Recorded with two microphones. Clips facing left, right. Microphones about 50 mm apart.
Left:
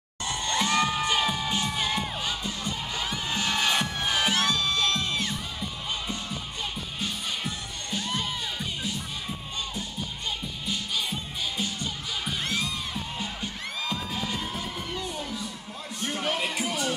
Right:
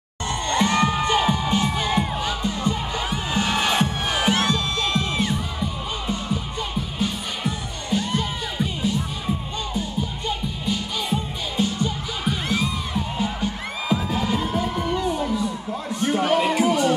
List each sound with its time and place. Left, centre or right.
0.3 s crowd: centre
1.4 s music: centre
11.1 s music: centre
15.1 s a sound: centre
16.0 s music: centre